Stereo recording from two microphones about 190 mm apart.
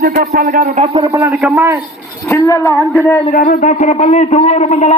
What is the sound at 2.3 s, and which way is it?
Speech, 15° left (ahead or behind).